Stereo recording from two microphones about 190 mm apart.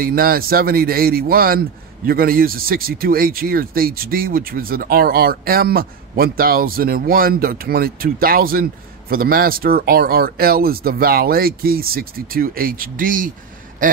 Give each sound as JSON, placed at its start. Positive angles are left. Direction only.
{"t": 0.0, "sound": "speech", "side_deg": -50}